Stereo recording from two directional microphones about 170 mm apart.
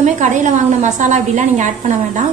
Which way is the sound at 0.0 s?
45° right (ahead or behind).